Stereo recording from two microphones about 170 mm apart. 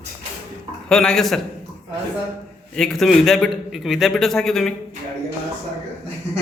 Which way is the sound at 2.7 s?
Centre (ahead or behind).